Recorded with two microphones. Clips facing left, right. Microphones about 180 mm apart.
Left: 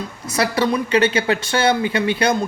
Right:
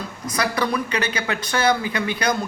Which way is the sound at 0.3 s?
30° left (ahead or behind).